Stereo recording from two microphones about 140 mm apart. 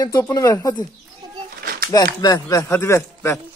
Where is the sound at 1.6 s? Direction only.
90° right.